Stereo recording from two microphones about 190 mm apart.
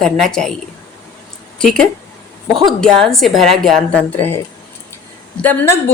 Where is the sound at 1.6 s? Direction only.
5° left (ahead or behind).